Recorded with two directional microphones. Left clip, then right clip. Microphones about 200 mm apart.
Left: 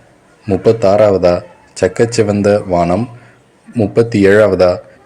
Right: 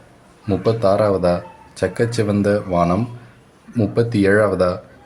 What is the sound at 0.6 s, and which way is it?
A man's voice, 20° left (ahead or behind).